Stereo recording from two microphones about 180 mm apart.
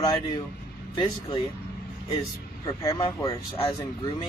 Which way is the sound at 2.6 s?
20° left (ahead or behind).